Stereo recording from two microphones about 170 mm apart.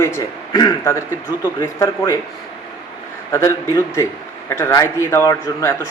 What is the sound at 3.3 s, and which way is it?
A man's voice, 15° left (ahead or behind).